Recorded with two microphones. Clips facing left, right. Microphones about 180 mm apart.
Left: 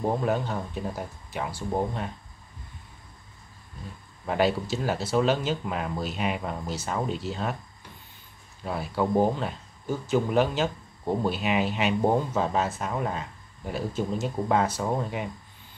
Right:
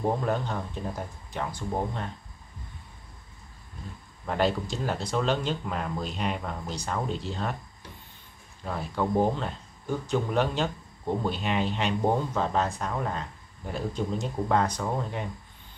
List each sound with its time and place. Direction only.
0.2 s speech: 5° left (ahead or behind)
4.3 s speech: 5° left (ahead or behind)
8.6 s speech: 5° left (ahead or behind)